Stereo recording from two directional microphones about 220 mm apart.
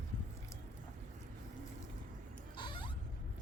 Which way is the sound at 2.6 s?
20° left (ahead or behind).